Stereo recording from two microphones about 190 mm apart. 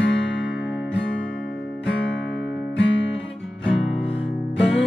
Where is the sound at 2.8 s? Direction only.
75° left (ahead or behind).